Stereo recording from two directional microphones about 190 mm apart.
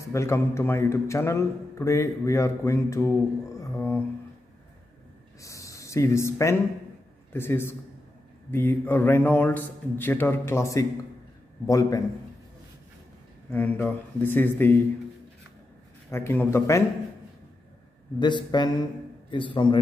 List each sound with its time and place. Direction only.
0.0 s a man's voice: 15° left (ahead or behind)
3.5 s a sound: 15° left (ahead or behind)
5.4 s a man's voice: 15° left (ahead or behind)
13.5 s a man's voice: 10° left (ahead or behind)
16.1 s a man's voice: 10° left (ahead or behind)
18.2 s speech: 25° left (ahead or behind)